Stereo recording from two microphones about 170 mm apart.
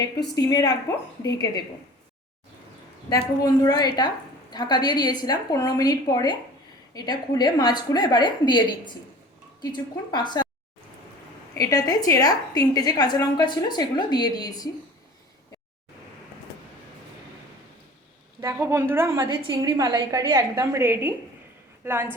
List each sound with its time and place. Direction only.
0.3 s a woman's voice: 20° left (ahead or behind)
3.1 s a woman's voice: 25° left (ahead or behind)
11.5 s a woman's voice: 20° left (ahead or behind)
18.3 s a woman's voice: 15° right (ahead or behind)